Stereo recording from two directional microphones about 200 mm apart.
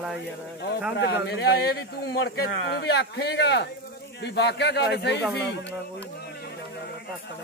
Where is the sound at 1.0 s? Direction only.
55° left (ahead or behind).